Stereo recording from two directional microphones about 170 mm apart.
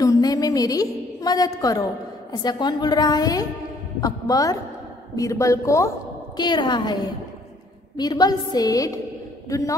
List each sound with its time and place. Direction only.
0.0 s a woman's voice: 20° left (ahead or behind)